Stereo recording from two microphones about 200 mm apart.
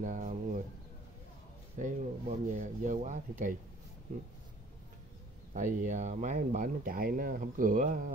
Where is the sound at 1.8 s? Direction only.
40° right (ahead or behind).